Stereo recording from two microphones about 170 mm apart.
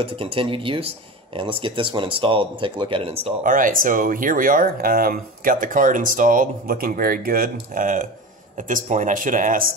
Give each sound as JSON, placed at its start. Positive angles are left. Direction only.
{"t": 0.0, "sound": "speech", "side_deg": -35}
{"t": 3.4, "sound": "speech", "side_deg": -55}